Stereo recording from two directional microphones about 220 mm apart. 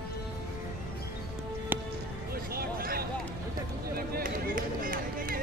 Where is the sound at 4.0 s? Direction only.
40° right (ahead or behind).